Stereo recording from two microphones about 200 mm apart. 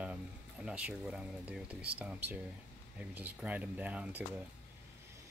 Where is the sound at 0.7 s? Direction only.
5° right (ahead or behind).